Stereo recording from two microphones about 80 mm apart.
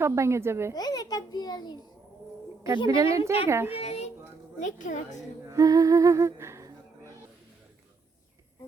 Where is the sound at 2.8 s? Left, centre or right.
Right.